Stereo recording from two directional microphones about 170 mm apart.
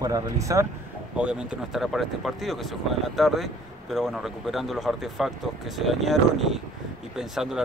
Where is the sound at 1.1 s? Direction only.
5° right (ahead or behind).